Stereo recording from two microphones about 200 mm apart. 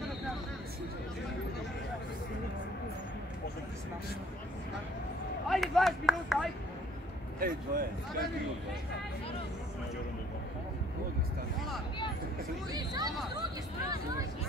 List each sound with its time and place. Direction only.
5.5 s speech: centre (ahead or behind)
7.3 s speech: 50° right (ahead or behind)
12.7 s speech: 20° right (ahead or behind)